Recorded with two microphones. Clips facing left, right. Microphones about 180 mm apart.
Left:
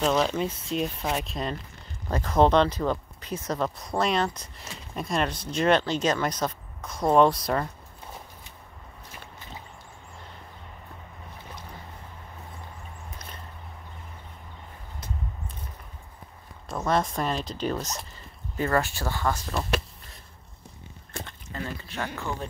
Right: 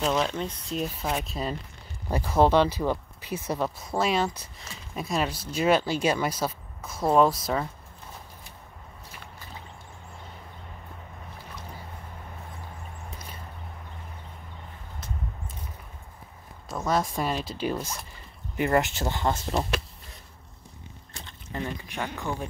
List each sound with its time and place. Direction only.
0.0 s speech: centre (ahead or behind)
16.6 s speech: centre (ahead or behind)
18.6 s speech: 20° right (ahead or behind)
21.1 s a sound: 55° left (ahead or behind)
21.5 s speech: 15° right (ahead or behind)